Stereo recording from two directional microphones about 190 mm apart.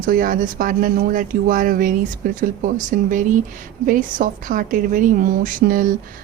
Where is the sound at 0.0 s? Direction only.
45° right (ahead or behind).